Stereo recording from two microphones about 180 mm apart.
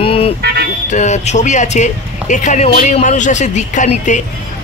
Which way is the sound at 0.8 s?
40° left (ahead or behind).